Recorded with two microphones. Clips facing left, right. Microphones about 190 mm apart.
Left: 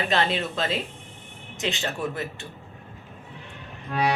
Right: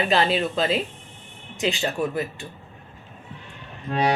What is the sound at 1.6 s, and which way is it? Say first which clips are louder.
Speech: right 4 dB; 35° right (ahead or behind).